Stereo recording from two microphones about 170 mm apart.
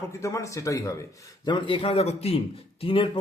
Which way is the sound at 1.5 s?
30° left (ahead or behind).